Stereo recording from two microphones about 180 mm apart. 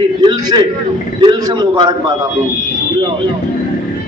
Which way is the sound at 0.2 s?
25° right (ahead or behind).